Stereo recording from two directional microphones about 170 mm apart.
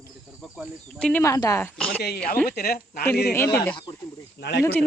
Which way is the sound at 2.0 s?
65° left (ahead or behind).